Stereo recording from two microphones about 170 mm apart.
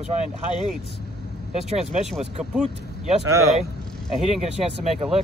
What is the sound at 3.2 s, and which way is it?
Speech, 15° right (ahead or behind).